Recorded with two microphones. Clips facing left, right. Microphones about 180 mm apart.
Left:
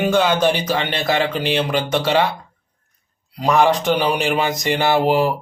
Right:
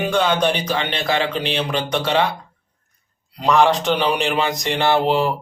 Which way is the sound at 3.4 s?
5° left (ahead or behind).